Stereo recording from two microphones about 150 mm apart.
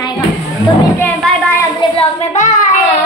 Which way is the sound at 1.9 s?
50° left (ahead or behind).